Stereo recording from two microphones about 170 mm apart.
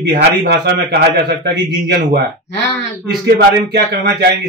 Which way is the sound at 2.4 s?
90° left.